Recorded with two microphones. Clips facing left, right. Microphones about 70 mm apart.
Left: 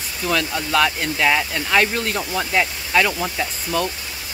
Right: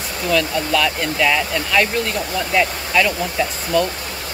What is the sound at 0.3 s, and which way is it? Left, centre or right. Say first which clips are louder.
Speech: right 3 dB; left.